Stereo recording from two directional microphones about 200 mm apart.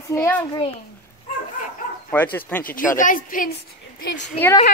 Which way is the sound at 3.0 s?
40° left (ahead or behind).